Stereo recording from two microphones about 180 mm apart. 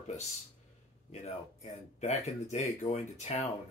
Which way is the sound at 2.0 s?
40° left (ahead or behind).